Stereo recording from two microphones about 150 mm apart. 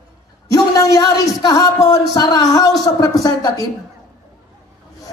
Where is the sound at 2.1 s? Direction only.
25° left (ahead or behind).